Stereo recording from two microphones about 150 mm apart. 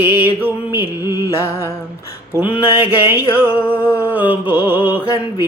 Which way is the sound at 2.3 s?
10° right (ahead or behind).